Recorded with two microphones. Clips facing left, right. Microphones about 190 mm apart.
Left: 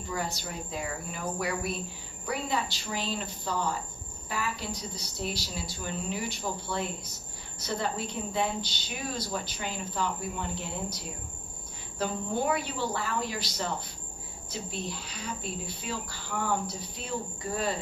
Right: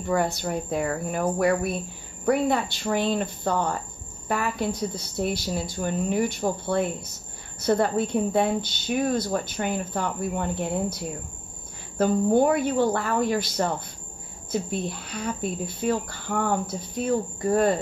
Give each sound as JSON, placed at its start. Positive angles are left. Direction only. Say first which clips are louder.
{"t": 0.0, "sound": "a woman's voice", "louder": "right 10 dB", "side_deg": -60}
{"t": 12.0, "sound": "speech", "louder": "right 11 dB", "side_deg": -50}